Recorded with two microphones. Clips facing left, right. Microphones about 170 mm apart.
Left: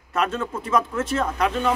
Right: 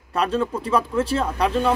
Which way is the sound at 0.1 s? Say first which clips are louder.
Right 3 dB; 35° right (ahead or behind).